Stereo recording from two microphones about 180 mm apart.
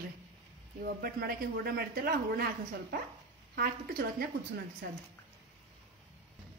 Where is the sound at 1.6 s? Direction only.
55° right (ahead or behind).